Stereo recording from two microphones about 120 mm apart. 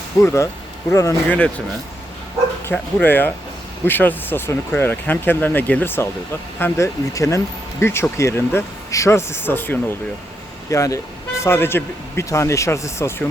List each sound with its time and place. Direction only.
0.2 s speech: 25° left (ahead or behind)
1.3 s speech: 10° left (ahead or behind)
2.7 s speech: 15° left (ahead or behind)